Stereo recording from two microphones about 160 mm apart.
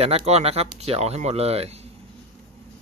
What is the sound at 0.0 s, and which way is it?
Speech, 40° right (ahead or behind).